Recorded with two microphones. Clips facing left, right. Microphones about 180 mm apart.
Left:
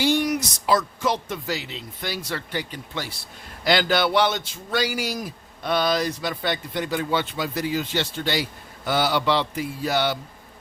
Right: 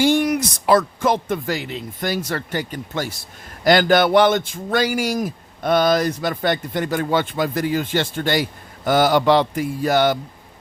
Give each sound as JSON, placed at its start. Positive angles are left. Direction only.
{"t": 0.0, "sound": "speech", "side_deg": -50}